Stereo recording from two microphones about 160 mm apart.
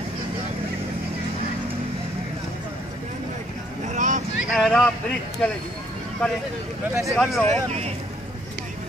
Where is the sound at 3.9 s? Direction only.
50° right (ahead or behind).